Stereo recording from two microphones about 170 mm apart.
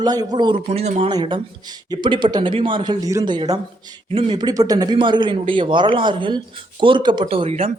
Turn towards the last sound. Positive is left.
turn(degrees=-35)  # may be behind; listen again after turning